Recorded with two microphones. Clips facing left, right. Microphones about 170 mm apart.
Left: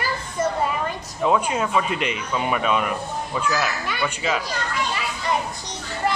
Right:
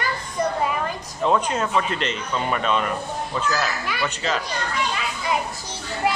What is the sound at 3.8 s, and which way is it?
Speech, centre (ahead or behind).